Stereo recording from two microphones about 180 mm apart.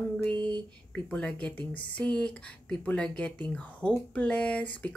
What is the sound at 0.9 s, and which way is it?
Speech, 5° left (ahead or behind).